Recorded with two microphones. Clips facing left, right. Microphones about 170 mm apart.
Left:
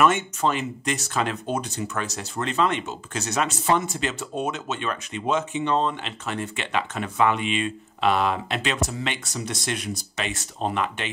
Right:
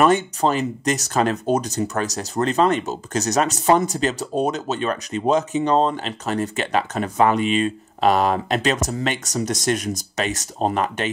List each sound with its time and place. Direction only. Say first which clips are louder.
0.0 s speech: right 4 dB; 35° right (ahead or behind)